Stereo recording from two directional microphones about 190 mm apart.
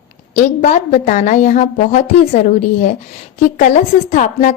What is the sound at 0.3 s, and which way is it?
A woman's voice, 40° left (ahead or behind).